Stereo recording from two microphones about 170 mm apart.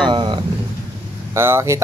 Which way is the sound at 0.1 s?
25° right (ahead or behind).